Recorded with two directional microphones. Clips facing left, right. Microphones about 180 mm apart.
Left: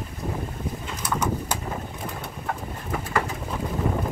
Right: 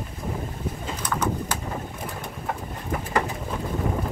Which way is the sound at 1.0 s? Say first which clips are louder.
Even; 10° left (ahead or behind).